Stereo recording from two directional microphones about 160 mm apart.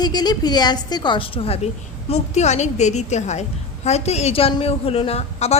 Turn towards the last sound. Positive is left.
turn(degrees=40)  # may be behind; listen again after turning